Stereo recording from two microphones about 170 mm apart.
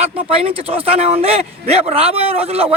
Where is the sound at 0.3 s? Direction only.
35° right (ahead or behind).